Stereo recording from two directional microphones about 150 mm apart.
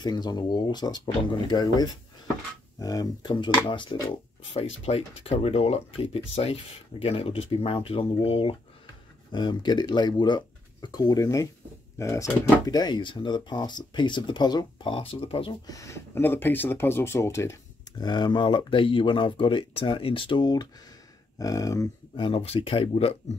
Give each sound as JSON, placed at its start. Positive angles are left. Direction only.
{"t": 0.0, "sound": "speech", "side_deg": 30}
{"t": 4.6, "sound": "speech", "side_deg": 45}
{"t": 9.3, "sound": "speech", "side_deg": 30}
{"t": 15.6, "sound": "speech", "side_deg": 20}
{"t": 22.1, "sound": "speech", "side_deg": 35}